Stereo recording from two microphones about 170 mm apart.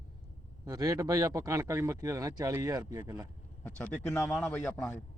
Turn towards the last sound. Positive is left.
turn(degrees=10)  # may be behind; listen again after turning